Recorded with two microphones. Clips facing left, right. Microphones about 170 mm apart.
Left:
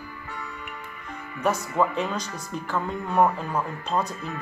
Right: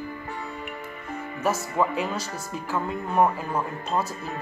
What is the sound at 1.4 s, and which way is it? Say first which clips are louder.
A man's voice: left 1 dB; 5° right (ahead or behind).